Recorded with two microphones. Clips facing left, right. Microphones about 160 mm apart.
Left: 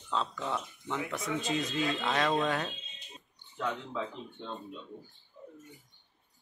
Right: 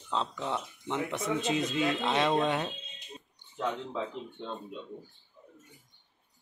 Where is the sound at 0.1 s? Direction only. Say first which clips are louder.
Right 1 dB; 20° right (ahead or behind).